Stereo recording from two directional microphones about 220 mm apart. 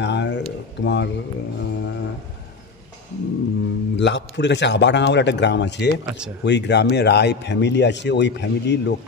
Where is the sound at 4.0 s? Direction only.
55° left (ahead or behind).